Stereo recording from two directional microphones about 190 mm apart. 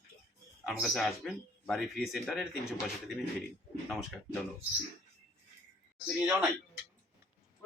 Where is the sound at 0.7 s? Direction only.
Centre (ahead or behind).